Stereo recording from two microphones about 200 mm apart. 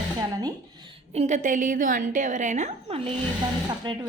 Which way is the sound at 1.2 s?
35° right (ahead or behind).